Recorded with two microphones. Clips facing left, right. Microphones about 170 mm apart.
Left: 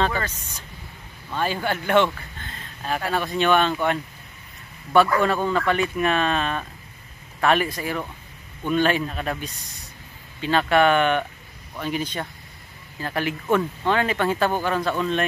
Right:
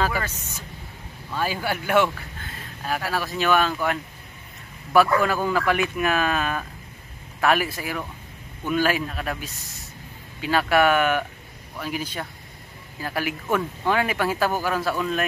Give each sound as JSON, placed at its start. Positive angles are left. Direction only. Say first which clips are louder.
{"t": 0.0, "sound": "speech", "louder": "left 1 dB", "side_deg": -10}
{"t": 1.3, "sound": "speech", "louder": "left 1 dB", "side_deg": -5}